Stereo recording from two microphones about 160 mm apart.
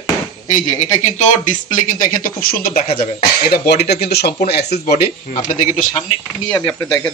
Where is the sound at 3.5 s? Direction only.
90° left.